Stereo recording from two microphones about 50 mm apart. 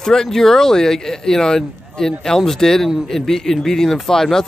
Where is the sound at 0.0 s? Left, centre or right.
Centre.